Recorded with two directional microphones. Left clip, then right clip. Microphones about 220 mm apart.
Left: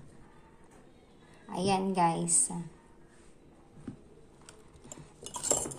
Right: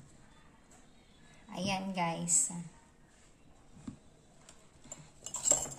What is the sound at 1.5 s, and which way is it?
Speech, 20° left (ahead or behind).